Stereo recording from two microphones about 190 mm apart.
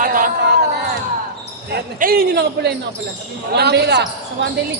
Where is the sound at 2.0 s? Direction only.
50° right (ahead or behind).